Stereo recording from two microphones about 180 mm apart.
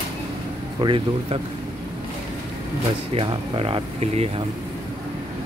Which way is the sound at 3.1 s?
30° right (ahead or behind).